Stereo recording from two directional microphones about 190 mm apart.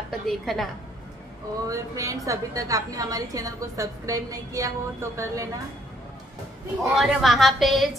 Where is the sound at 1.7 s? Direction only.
15° right (ahead or behind).